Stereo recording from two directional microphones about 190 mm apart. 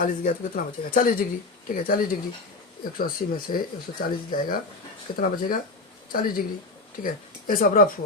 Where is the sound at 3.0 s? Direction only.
50° left (ahead or behind).